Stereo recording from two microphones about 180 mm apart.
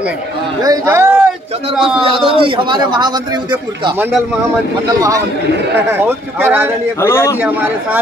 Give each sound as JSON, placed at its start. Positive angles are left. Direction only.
{"t": 0.6, "sound": "a man's voice", "side_deg": -15}
{"t": 2.0, "sound": "a man's voice", "side_deg": -30}
{"t": 5.8, "sound": "speech", "side_deg": -10}
{"t": 7.0, "sound": "a man's voice", "side_deg": 15}